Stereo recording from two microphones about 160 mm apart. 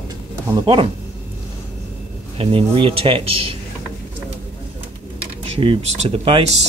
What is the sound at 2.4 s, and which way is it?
Speech, 35° right (ahead or behind).